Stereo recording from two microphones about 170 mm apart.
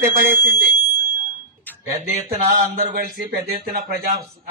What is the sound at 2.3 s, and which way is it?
Speech, 40° right (ahead or behind).